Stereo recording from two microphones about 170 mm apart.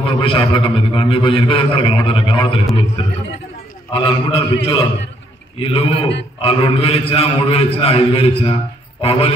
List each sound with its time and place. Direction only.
0.0 s a man's voice: 30° left (ahead or behind)
3.9 s a man's voice: 30° left (ahead or behind)